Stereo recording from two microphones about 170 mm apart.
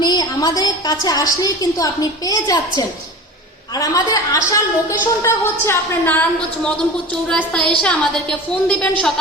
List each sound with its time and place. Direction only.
0.0 s a woman's voice: 25° left (ahead or behind)
7.3 s a woman's voice: 5° left (ahead or behind)